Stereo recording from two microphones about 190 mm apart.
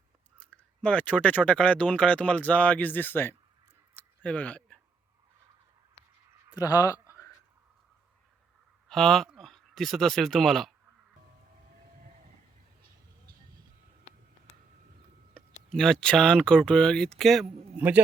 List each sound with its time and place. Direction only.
0.5 s speech: 5° left (ahead or behind)
4.2 s a sound: 5° left (ahead or behind)
6.6 s speech: 20° left (ahead or behind)
8.9 s speech: centre (ahead or behind)
15.4 s speech: centre (ahead or behind)
17.7 s a man's voice: 10° right (ahead or behind)